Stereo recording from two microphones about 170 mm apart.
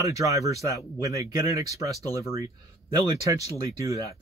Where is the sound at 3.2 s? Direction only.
20° right (ahead or behind).